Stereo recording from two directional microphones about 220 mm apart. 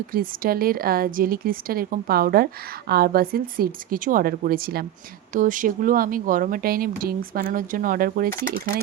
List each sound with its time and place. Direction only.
0.1 s a woman's voice: 40° right (ahead or behind)